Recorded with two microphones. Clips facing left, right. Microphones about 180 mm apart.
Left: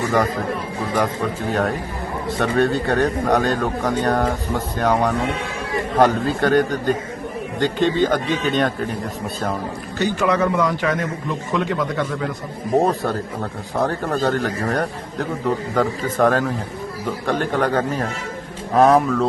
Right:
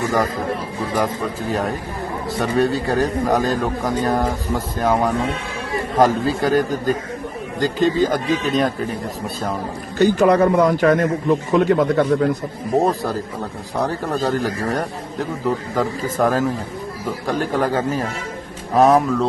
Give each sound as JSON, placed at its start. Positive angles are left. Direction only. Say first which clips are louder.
{"t": 0.9, "sound": "a man's voice", "louder": "even", "side_deg": 0}
{"t": 8.0, "sound": "a man's voice", "louder": "even", "side_deg": -5}
{"t": 10.0, "sound": "a man's voice", "louder": "right 5 dB", "side_deg": -35}
{"t": 12.8, "sound": "a man's voice", "louder": "even", "side_deg": 0}